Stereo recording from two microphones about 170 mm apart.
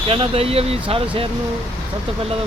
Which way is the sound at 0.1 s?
35° right (ahead or behind).